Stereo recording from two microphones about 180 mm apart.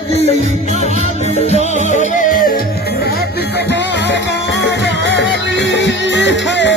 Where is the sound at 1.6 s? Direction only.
40° right (ahead or behind).